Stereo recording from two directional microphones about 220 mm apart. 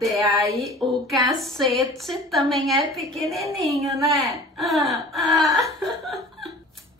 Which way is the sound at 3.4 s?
15° right (ahead or behind).